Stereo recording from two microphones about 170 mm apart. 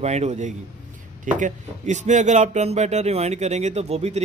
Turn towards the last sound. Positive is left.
turn(degrees=-40)  # may be behind; listen again after turning